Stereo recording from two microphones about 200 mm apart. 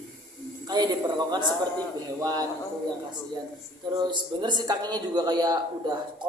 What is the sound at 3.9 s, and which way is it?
A man's voice, 20° right (ahead or behind).